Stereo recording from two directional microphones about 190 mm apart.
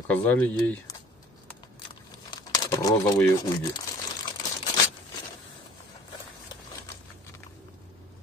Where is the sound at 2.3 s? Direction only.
20° left (ahead or behind).